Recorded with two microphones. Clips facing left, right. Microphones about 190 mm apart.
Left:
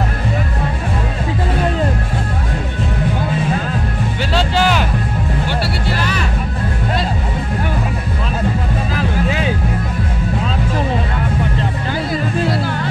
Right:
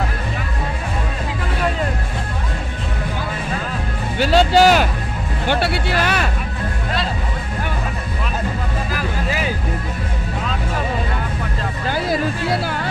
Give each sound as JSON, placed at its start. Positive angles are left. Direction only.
{"t": 4.3, "sound": "music", "side_deg": -45}
{"t": 5.5, "sound": "vehicle", "side_deg": -55}